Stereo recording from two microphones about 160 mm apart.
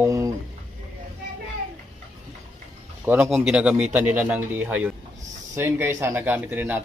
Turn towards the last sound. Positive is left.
turn(degrees=-10)  # may be behind; listen again after turning